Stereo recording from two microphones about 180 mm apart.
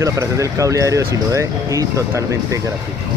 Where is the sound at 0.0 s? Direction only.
15° right (ahead or behind).